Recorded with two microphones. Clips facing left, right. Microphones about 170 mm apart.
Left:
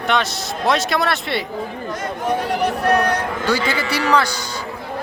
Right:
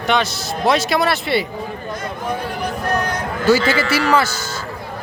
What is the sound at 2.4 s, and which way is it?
Music, 75° left (ahead or behind).